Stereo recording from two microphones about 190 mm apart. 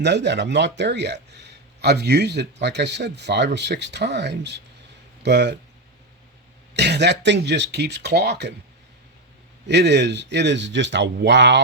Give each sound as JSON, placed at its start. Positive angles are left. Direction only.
{"t": 0.0, "sound": "speech", "side_deg": -65}
{"t": 6.7, "sound": "speech", "side_deg": -60}
{"t": 9.6, "sound": "speech", "side_deg": -65}